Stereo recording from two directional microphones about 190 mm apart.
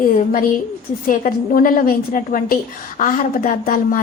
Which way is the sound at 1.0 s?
45° left (ahead or behind).